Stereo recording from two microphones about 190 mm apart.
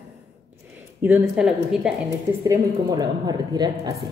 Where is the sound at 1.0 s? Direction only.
5° right (ahead or behind).